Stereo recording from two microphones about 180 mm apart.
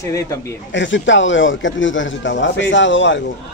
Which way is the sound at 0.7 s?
90° left.